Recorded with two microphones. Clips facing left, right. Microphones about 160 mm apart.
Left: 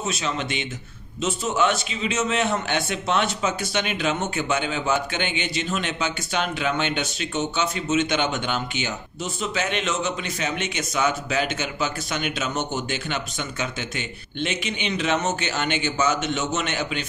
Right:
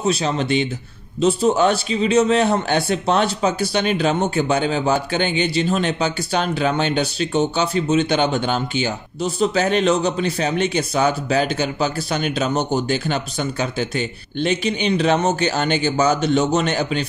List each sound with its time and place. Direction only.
0.0 s a man's voice: 35° right (ahead or behind)